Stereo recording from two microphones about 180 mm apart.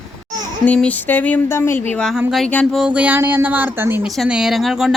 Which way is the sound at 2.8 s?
5° right (ahead or behind).